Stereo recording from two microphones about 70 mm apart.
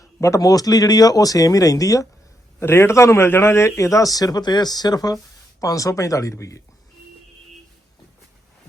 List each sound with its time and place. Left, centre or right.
0.2 s speech: left
2.6 s a man's voice: left
5.5 s a man's voice: left